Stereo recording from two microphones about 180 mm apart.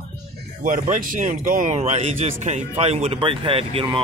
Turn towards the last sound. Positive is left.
turn(degrees=-30)  # may be behind; listen again after turning